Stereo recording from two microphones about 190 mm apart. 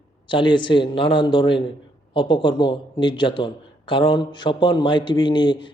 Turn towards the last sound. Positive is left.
turn(degrees=25)  # may be behind; listen again after turning